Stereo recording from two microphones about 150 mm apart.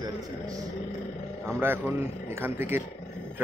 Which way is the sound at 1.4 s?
15° right (ahead or behind).